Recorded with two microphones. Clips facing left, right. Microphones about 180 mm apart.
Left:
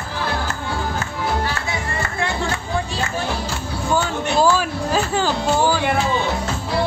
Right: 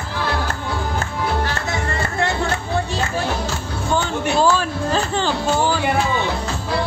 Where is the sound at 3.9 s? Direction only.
10° left (ahead or behind).